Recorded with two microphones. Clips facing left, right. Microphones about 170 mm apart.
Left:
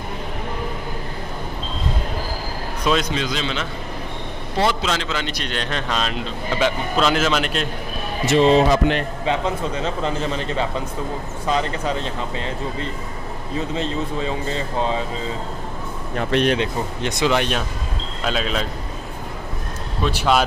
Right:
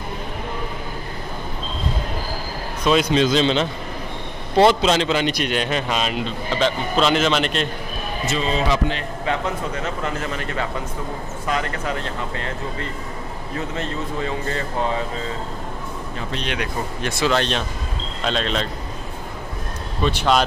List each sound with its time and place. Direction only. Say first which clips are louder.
2.9 s a man's voice: right 2 dB; 5° left (ahead or behind)
3.2 s a man's voice: right 7 dB; 25° right (ahead or behind); by 7.6 s 5° left (ahead or behind)
8.3 s speech: left 7 dB; 70° left (ahead or behind)
9.2 s a man's voice: right 2 dB; 20° left (ahead or behind)
13.7 s a man's voice: left 2 dB; 20° left (ahead or behind)
16.2 s speech: left 11 dB; 60° left (ahead or behind)
16.5 s a man's voice: left 3 dB; 20° left (ahead or behind)
20.0 s a man's voice: even; 5° left (ahead or behind)